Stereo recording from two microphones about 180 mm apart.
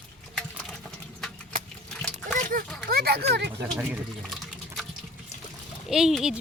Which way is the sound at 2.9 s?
60° right (ahead or behind).